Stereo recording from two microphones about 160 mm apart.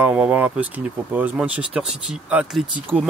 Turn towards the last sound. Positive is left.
turn(degrees=-10)  # may be behind; listen again after turning